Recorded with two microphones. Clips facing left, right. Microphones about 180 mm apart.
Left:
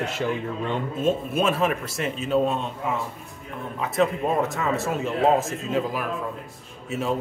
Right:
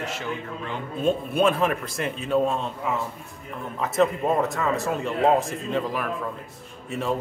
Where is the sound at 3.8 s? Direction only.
Centre (ahead or behind).